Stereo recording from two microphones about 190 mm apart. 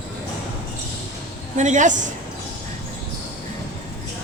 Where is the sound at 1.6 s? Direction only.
40° right (ahead or behind).